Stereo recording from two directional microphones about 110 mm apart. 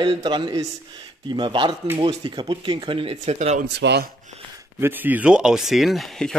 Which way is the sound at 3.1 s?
90° right.